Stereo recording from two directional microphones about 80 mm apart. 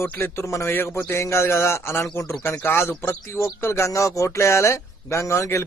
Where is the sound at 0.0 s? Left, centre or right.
Left.